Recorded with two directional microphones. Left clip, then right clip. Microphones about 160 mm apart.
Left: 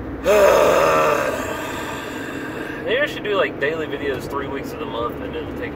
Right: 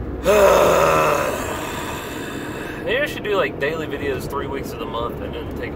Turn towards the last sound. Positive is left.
turn(degrees=-15)  # may be behind; listen again after turning